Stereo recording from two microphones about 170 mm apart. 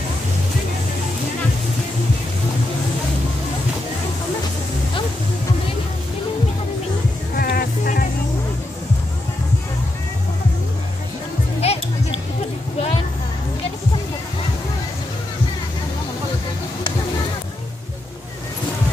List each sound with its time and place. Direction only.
7.3 s music: 60° left (ahead or behind)
11.6 s music: 35° left (ahead or behind)